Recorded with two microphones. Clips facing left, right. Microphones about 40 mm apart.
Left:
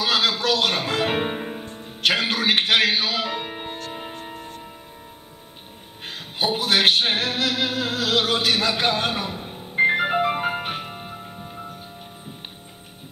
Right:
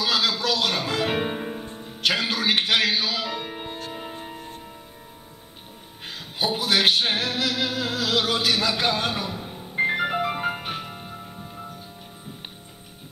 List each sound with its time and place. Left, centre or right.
0.0 s music: centre
1.8 s a man's voice: centre
6.0 s music: centre